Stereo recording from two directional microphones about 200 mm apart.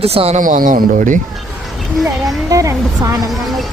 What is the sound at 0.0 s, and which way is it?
Speech, 30° right (ahead or behind).